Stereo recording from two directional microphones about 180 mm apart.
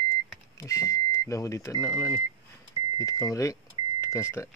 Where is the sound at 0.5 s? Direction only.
15° left (ahead or behind).